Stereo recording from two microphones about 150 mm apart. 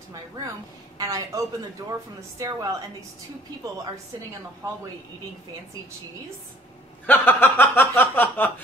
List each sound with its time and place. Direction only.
0.9 s speech: 25° right (ahead or behind)
7.1 s chuckle: 15° left (ahead or behind)